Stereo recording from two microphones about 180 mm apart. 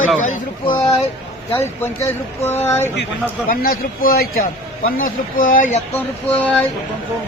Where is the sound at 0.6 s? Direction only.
25° left (ahead or behind).